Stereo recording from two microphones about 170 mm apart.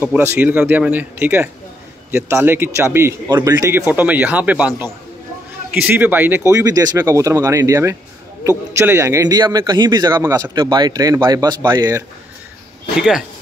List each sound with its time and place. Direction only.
0.0 s a man's voice: 10° right (ahead or behind)